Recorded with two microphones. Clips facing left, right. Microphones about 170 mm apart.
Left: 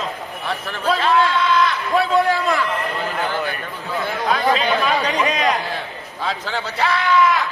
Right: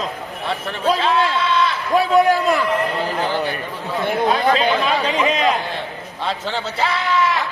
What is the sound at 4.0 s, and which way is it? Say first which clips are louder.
Speech: right 3 dB; 20° right (ahead or behind).